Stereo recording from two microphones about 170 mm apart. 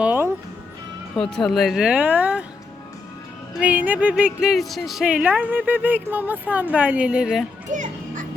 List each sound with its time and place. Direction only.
0.0 s music: 10° right (ahead or behind)
1.1 s speech: 5° left (ahead or behind)
3.6 s speech: 10° right (ahead or behind)
7.7 s children playing: 50° right (ahead or behind)